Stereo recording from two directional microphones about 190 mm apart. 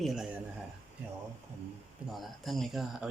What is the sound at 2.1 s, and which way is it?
Speech, centre (ahead or behind).